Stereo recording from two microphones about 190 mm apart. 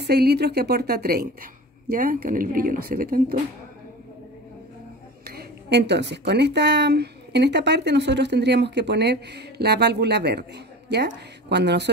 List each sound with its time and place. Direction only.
0.0 s a woman's voice: 60° right (ahead or behind)
5.2 s speech: 55° right (ahead or behind)